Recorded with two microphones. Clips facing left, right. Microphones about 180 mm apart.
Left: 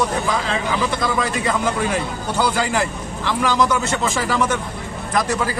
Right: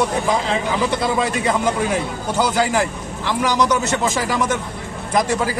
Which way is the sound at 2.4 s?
15° right (ahead or behind).